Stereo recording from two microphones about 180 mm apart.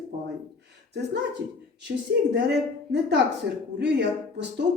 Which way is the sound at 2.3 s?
70° right (ahead or behind).